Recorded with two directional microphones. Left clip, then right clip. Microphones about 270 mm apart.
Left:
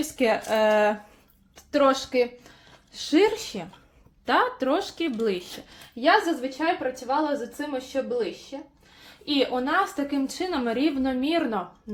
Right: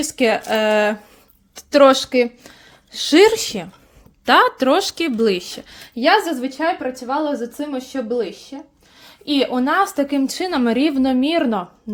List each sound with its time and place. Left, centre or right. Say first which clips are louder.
0.0 s speech: right 6 dB; right
1.5 s speech: right 10 dB; right